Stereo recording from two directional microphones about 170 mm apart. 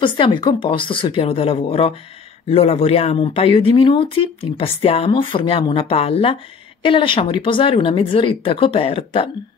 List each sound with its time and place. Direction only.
0.0 s speech: 30° left (ahead or behind)